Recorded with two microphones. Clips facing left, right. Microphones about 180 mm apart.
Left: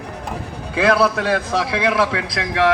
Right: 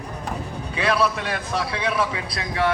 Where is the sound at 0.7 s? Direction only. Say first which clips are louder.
Left 6 dB; 90° left.